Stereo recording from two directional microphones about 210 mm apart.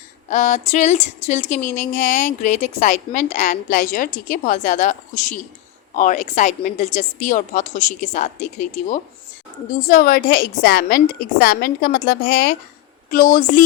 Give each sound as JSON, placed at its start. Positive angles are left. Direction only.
{"t": 0.3, "sound": "speech", "side_deg": 35}